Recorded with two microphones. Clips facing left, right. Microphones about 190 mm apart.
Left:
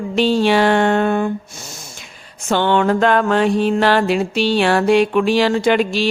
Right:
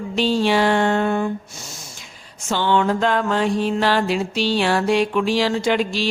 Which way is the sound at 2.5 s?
60° left (ahead or behind).